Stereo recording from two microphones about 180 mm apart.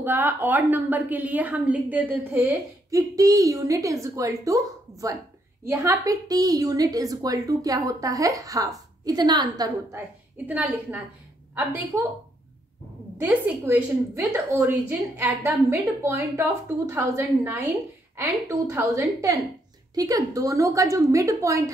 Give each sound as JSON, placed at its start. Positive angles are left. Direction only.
{"t": 0.0, "sound": "a woman's voice", "side_deg": -10}
{"t": 10.3, "sound": "a woman's voice", "side_deg": -10}
{"t": 13.2, "sound": "a woman's voice", "side_deg": -10}